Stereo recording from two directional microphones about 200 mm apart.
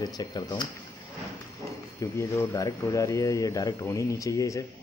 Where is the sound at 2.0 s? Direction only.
15° left (ahead or behind).